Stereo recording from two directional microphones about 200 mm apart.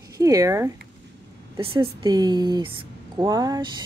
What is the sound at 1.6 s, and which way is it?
Speech, 25° right (ahead or behind).